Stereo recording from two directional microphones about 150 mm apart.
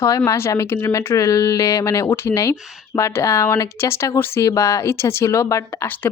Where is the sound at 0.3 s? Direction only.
20° left (ahead or behind).